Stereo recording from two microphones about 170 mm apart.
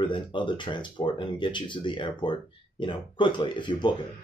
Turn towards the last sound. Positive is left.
turn(degrees=25)  # may be behind; listen again after turning